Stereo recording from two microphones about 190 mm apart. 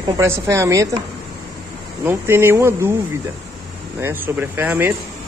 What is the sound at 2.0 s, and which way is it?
Speech, 10° right (ahead or behind).